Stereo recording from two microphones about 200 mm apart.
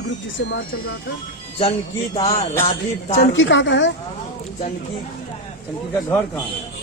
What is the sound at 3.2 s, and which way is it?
Speech, 70° left (ahead or behind).